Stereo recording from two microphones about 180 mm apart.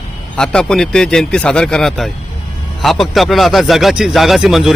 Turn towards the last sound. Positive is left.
turn(degrees=0)  # may be behind; listen again after turning